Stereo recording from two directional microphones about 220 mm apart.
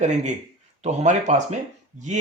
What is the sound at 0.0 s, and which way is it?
Speech, 30° right (ahead or behind).